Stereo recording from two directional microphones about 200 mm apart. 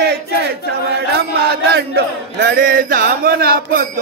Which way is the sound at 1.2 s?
55° right (ahead or behind).